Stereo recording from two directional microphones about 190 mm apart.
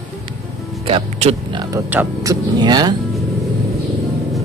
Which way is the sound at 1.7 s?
15° right (ahead or behind).